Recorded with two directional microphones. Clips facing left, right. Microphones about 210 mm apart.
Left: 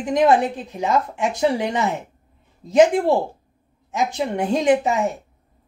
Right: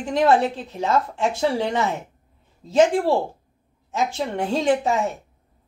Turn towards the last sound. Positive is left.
turn(degrees=15)  # may be behind; listen again after turning